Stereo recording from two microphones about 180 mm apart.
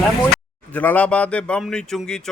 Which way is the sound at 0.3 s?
10° left (ahead or behind).